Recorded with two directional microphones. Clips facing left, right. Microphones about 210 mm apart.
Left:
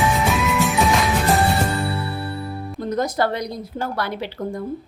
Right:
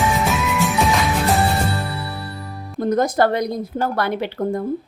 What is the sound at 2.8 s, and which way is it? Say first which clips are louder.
A woman's voice: right 5 dB; 50° right (ahead or behind).